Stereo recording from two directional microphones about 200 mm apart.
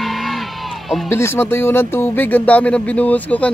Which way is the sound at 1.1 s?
10° left (ahead or behind).